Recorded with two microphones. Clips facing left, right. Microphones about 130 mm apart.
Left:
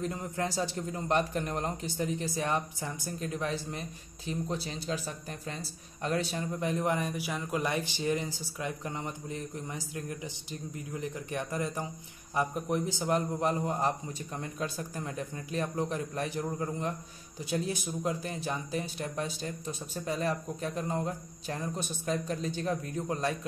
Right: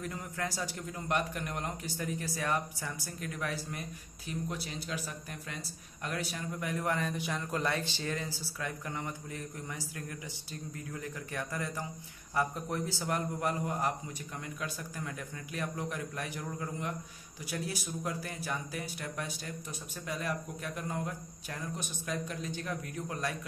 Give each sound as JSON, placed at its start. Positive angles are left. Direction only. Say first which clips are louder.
{"t": 0.0, "sound": "a man's voice", "louder": "left 5 dB", "side_deg": 25}